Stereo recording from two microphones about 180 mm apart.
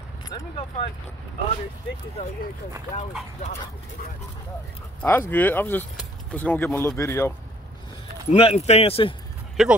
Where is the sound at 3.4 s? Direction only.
40° left (ahead or behind).